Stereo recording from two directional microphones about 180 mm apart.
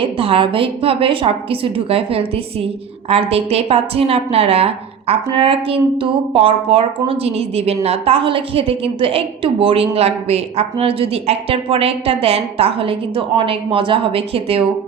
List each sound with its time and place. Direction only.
0.0 s a woman's voice: 30° right (ahead or behind)